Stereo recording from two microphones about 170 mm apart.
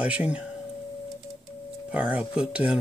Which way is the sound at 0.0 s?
10° right (ahead or behind).